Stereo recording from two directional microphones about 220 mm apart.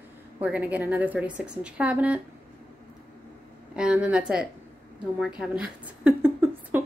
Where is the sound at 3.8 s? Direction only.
5° right (ahead or behind).